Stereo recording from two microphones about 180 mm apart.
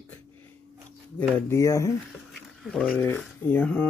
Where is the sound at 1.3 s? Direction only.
15° left (ahead or behind).